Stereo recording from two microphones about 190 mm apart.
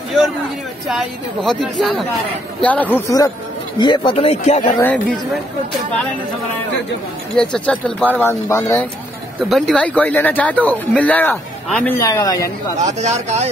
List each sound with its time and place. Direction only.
0.8 s a woman's voice: centre (ahead or behind)
3.8 s speech: 25° left (ahead or behind)
4.6 s speech: 15° left (ahead or behind)
4.9 s a woman's voice: 5° left (ahead or behind)
7.3 s speech: 5° left (ahead or behind)
9.5 s speech: centre (ahead or behind); by 12.4 s 20° left (ahead or behind)
13.0 s speech: 35° right (ahead or behind)